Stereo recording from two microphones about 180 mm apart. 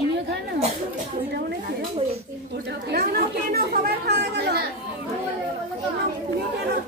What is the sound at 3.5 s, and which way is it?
A woman's voice, 60° right (ahead or behind).